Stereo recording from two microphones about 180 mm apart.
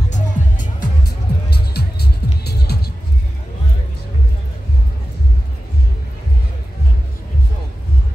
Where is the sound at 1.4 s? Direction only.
60° left (ahead or behind).